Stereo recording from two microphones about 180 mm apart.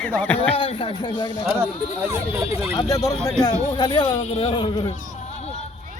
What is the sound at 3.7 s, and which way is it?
Speech, 25° left (ahead or behind).